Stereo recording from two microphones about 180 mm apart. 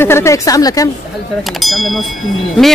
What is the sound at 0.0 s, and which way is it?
Speech, 15° left (ahead or behind).